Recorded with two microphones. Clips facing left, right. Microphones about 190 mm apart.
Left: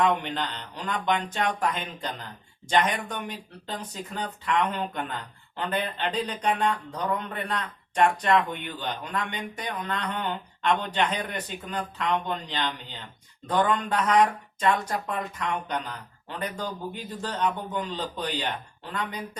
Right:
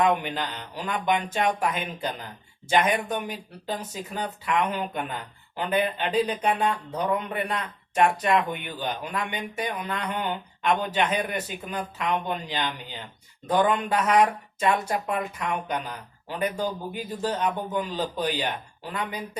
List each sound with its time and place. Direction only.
0.0 s speech: 10° right (ahead or behind)